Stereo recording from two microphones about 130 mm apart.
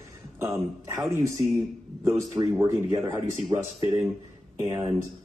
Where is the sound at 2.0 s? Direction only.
20° right (ahead or behind).